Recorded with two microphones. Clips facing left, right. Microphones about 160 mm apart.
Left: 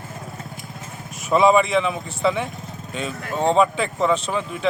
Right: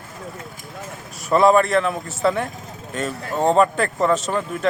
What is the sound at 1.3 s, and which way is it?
Speech, centre (ahead or behind).